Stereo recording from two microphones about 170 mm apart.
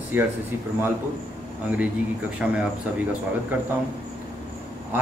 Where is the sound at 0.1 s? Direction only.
15° right (ahead or behind).